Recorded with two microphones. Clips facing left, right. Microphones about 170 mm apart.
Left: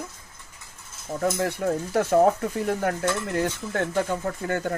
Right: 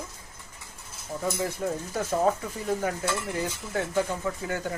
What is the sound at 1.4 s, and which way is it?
Stir, 70° left (ahead or behind).